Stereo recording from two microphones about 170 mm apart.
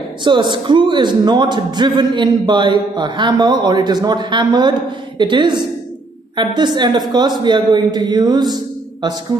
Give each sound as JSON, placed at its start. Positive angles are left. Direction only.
{"t": 0.2, "sound": "a man's voice", "side_deg": -25}